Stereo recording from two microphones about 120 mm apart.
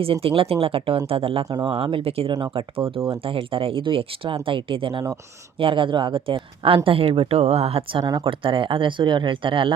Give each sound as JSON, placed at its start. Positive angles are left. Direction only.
{"t": 0.0, "sound": "speech", "side_deg": -50}
{"t": 1.5, "sound": "speech", "side_deg": -35}
{"t": 1.7, "sound": "speech", "side_deg": -55}
{"t": 2.3, "sound": "speech", "side_deg": -40}
{"t": 8.0, "sound": "speech", "side_deg": -35}